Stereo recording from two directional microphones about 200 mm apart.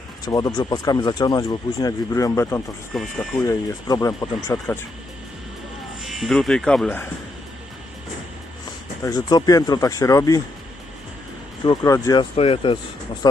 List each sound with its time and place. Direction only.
0.3 s speech: 20° left (ahead or behind)
2.9 s speech: 5° left (ahead or behind)
3.4 s speech: 15° left (ahead or behind)
6.0 s speech: centre (ahead or behind)
9.0 s speech: 20° left (ahead or behind)
11.6 s speech: 20° left (ahead or behind)
12.4 s speech: 25° left (ahead or behind)